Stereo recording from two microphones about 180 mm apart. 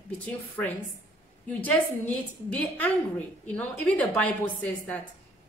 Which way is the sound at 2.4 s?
10° left (ahead or behind).